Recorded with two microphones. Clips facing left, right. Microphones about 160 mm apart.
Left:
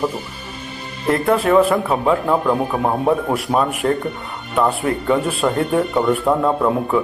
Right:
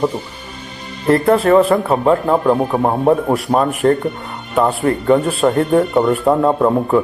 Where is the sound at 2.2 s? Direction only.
20° right (ahead or behind).